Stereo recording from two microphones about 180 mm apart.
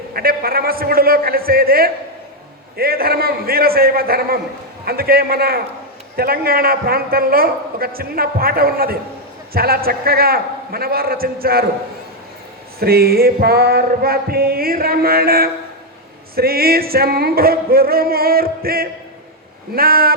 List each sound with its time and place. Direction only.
0.1 s a man's voice: 55° right (ahead or behind)
12.8 s a man's voice: 60° right (ahead or behind)